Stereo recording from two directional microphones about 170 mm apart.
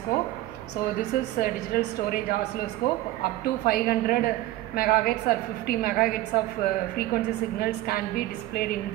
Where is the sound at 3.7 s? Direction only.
60° left (ahead or behind).